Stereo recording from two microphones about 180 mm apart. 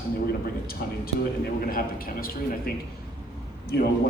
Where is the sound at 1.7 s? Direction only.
55° left (ahead or behind).